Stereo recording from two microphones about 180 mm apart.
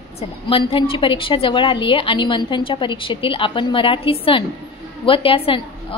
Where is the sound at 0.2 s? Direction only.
30° left (ahead or behind).